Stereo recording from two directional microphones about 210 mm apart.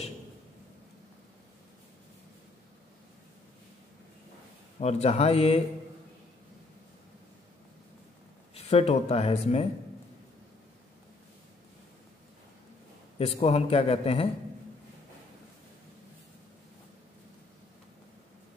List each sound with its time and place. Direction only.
4.7 s speech: 30° left (ahead or behind)
8.5 s speech: 30° left (ahead or behind)
13.2 s a man's voice: 30° left (ahead or behind)